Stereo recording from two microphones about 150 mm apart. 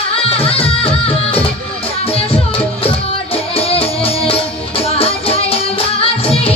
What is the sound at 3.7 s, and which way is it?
Music, 40° left (ahead or behind).